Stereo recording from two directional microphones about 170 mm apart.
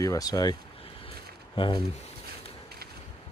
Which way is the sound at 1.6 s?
30° left (ahead or behind).